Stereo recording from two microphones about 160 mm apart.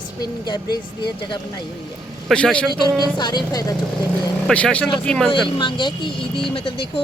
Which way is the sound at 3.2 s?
25° left (ahead or behind).